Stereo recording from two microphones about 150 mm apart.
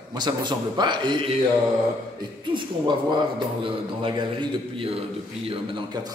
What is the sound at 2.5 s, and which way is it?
A man's voice, 30° right (ahead or behind).